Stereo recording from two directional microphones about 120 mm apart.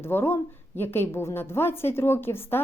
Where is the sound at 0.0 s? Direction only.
20° left (ahead or behind).